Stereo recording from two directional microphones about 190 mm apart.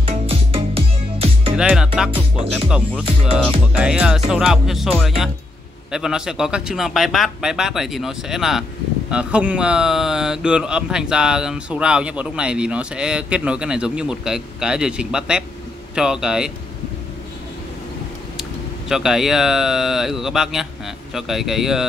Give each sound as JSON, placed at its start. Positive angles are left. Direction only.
{"t": 0.0, "sound": "music", "side_deg": -30}
{"t": 1.6, "sound": "speech", "side_deg": -5}
{"t": 2.0, "sound": "music", "side_deg": -30}
{"t": 2.5, "sound": "speech", "side_deg": 0}
{"t": 5.9, "sound": "speech", "side_deg": -5}
{"t": 18.9, "sound": "speech", "side_deg": 0}